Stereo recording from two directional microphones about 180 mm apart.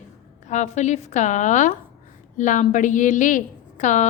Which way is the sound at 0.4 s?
40° left (ahead or behind).